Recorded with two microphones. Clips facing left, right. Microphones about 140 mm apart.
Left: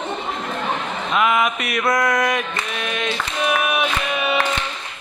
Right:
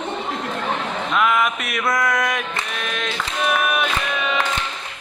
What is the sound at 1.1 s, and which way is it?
Mantra, 5° left (ahead or behind).